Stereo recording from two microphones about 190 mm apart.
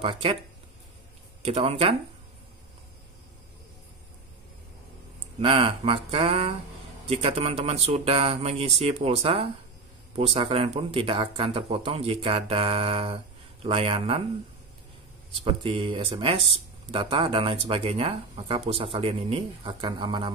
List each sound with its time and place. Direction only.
0.0 s speech: 30° right (ahead or behind)
1.4 s speech: 30° right (ahead or behind)
5.4 s speech: 25° right (ahead or behind)
15.4 s speech: 25° right (ahead or behind)